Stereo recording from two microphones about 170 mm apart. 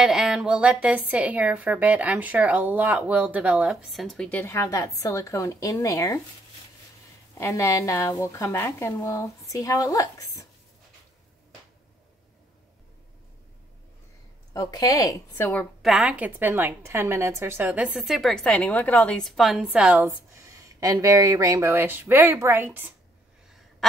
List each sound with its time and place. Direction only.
0.0 s a woman's voice: 5° right (ahead or behind); by 6.2 s 20° left (ahead or behind)
7.3 s speech: 15° left (ahead or behind)
14.5 s a woman's voice: 20° left (ahead or behind)
15.8 s a woman's voice: centre (ahead or behind)
20.4 s speech: 20° right (ahead or behind)
23.8 s duck: centre (ahead or behind)